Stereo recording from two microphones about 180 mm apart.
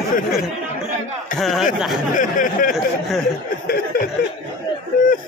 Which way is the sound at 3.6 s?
55° left (ahead or behind).